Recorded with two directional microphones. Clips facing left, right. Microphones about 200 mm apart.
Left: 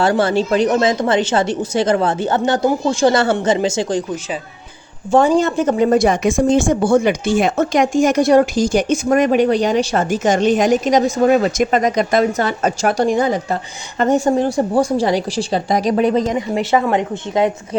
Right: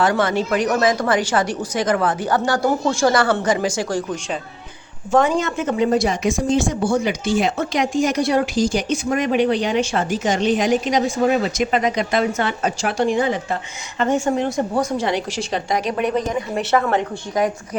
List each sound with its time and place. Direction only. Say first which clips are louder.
0.0 s a woman's voice: left 3 dB; 30° left (ahead or behind)
5.1 s a woman's voice: left 4 dB; 30° left (ahead or behind)
16.6 s a woman's voice: left 2 dB; 15° left (ahead or behind)